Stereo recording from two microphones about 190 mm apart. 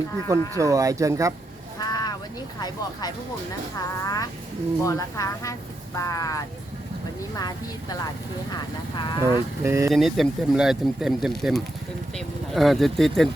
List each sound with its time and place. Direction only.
0.3 s speech: 15° right (ahead or behind)
1.8 s a sound: 20° left (ahead or behind)
2.6 s a woman's voice: 20° left (ahead or behind)
9.6 s speech: 15° right (ahead or behind)
9.9 s speech: centre (ahead or behind)